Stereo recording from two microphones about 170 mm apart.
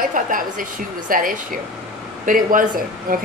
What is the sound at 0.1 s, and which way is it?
A woman's voice, 55° right (ahead or behind).